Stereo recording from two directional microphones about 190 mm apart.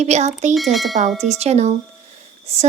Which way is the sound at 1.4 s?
35° right (ahead or behind).